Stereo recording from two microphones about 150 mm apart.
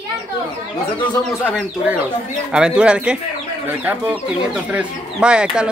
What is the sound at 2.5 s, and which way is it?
Speech, 5° right (ahead or behind).